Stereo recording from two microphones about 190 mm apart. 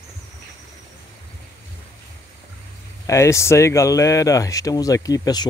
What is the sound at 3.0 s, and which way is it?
Speech, 15° left (ahead or behind).